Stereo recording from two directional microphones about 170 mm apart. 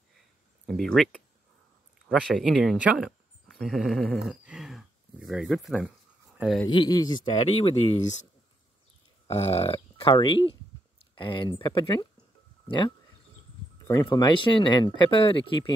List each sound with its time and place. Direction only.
0.7 s speech: centre (ahead or behind)
4.2 s a sound: 5° right (ahead or behind)
6.3 s speech: 5° right (ahead or behind)
6.7 s speech: 25° left (ahead or behind)
7.2 s speech: 35° left (ahead or behind)
9.3 s speech: 35° left (ahead or behind)